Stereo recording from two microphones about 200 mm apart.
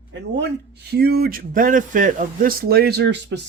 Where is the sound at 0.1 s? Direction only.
60° right (ahead or behind).